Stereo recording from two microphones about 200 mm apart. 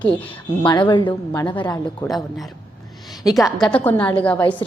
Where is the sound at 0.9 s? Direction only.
25° left (ahead or behind).